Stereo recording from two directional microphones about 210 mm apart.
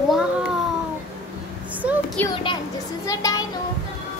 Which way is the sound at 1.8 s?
5° right (ahead or behind).